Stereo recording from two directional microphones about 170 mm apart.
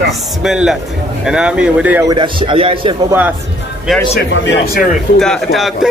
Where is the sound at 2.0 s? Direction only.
30° right (ahead or behind).